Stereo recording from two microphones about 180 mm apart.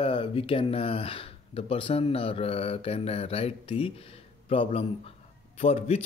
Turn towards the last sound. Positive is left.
turn(degrees=35)  # may be behind; listen again after turning